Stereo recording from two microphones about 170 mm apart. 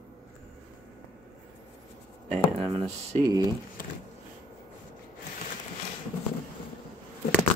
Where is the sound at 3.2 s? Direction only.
20° right (ahead or behind).